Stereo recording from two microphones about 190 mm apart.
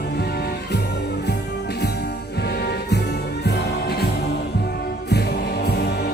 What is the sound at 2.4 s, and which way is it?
Music, 60° left (ahead or behind).